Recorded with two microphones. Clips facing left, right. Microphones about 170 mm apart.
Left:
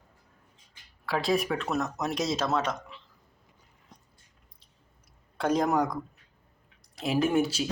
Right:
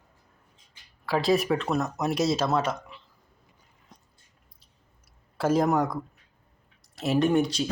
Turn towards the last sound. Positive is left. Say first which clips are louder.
# right 2 dB
turn(degrees=5)  # may be behind; listen again after turning